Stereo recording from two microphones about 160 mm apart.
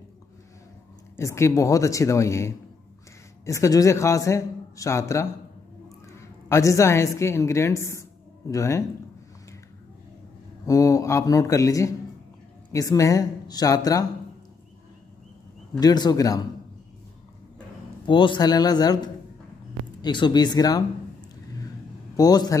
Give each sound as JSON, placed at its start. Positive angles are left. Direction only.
{"t": 1.1, "sound": "a woman's voice", "side_deg": 15}
{"t": 10.7, "sound": "speech", "side_deg": 20}
{"t": 15.8, "sound": "speech", "side_deg": 25}
{"t": 18.0, "sound": "speech", "side_deg": 30}
{"t": 22.1, "sound": "speech", "side_deg": 25}